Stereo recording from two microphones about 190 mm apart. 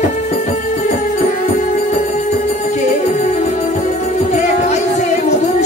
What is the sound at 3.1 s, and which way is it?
Music, 40° left (ahead or behind).